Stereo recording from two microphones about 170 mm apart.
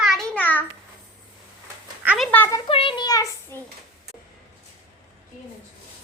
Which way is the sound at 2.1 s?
Centre (ahead or behind).